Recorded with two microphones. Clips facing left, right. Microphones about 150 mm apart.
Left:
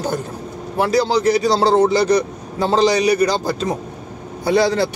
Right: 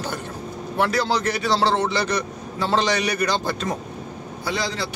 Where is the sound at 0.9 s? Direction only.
15° left (ahead or behind).